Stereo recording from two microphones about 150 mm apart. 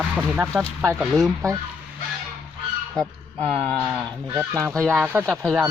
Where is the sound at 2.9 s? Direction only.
5° left (ahead or behind).